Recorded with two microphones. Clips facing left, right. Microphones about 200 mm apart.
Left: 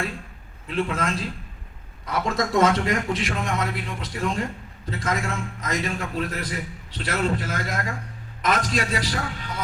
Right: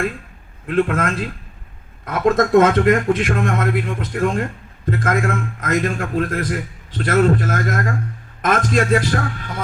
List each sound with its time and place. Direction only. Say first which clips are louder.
0.7 s a man's voice: right 7 dB; 55° right (ahead or behind)